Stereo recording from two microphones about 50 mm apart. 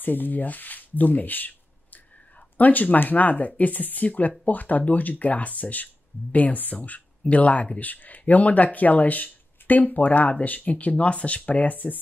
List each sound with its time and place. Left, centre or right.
0.0 s speech: left
2.5 s speech: left